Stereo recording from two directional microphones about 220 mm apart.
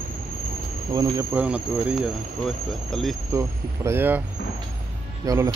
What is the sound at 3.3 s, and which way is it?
Speech, 10° right (ahead or behind).